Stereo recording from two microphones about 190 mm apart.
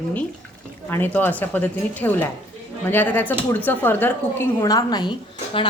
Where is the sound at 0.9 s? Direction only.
10° left (ahead or behind).